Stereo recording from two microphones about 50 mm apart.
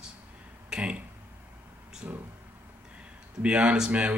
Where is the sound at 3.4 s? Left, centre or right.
Right.